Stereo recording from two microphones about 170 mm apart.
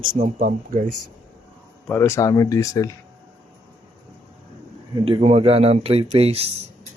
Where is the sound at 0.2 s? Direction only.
45° right (ahead or behind).